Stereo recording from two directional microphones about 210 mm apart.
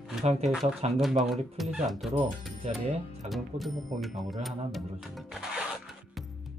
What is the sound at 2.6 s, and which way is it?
Speech, 30° right (ahead or behind).